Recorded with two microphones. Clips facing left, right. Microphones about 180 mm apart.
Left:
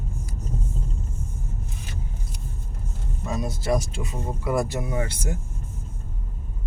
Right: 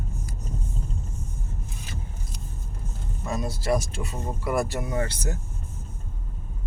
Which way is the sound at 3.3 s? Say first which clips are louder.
Even; 20° left (ahead or behind).